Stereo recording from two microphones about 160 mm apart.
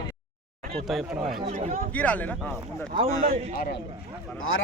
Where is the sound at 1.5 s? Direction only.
50° right (ahead or behind).